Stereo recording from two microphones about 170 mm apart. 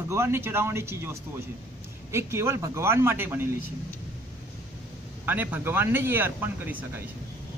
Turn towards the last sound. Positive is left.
turn(degrees=-10)  # may be behind; listen again after turning